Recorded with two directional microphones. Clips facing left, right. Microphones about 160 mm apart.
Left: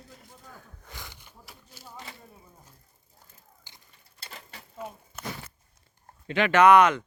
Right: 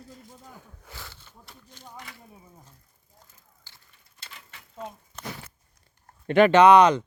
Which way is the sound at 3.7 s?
15° left (ahead or behind).